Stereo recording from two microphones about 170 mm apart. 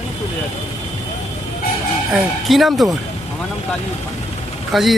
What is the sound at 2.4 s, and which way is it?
Speech, centre (ahead or behind).